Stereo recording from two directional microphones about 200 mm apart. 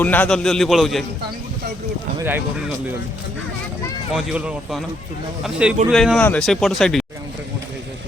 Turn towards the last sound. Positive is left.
turn(degrees=0)  # may be behind; listen again after turning